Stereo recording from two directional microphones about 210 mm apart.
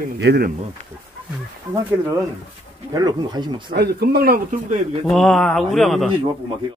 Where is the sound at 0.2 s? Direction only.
50° right (ahead or behind).